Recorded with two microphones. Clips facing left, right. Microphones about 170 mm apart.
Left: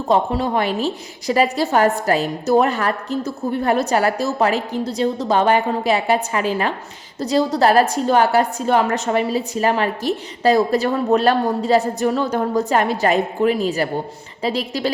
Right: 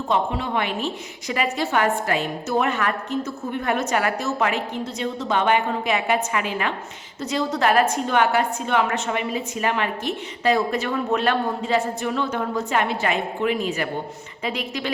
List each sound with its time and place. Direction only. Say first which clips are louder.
0.1 s a woman's voice: left 6 dB; 40° left (ahead or behind)